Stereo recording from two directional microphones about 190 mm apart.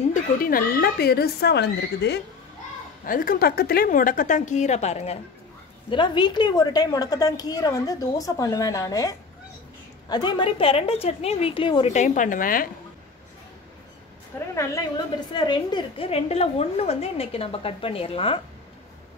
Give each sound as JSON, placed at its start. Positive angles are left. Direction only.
{"t": 0.1, "sound": "speech", "side_deg": 50}
{"t": 3.1, "sound": "a woman's voice", "side_deg": 50}
{"t": 14.5, "sound": "a woman's voice", "side_deg": 15}